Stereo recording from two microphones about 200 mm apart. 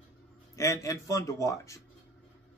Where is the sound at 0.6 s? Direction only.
15° left (ahead or behind).